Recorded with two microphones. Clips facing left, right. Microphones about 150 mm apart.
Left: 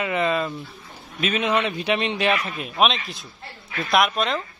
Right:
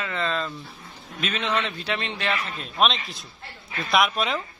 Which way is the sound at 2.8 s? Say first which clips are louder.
Left 2 dB; centre (ahead or behind).